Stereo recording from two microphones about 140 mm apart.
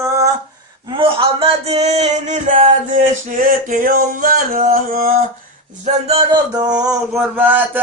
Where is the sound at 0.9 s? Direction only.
40° right (ahead or behind); by 5.1 s 90° right.